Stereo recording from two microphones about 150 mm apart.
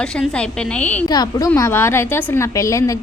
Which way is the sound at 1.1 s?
25° left (ahead or behind).